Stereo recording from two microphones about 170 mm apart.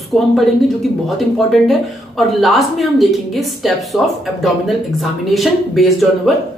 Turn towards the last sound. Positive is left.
turn(degrees=0)  # may be behind; listen again after turning